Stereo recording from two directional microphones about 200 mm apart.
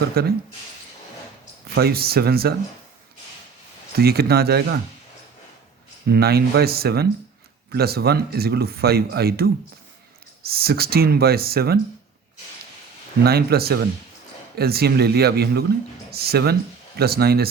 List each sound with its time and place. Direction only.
0.2 s speech: 50° right (ahead or behind)
1.7 s speech: 50° right (ahead or behind)
3.9 s speech: 50° right (ahead or behind)
6.1 s speech: 50° right (ahead or behind)
13.2 s speech: 50° right (ahead or behind)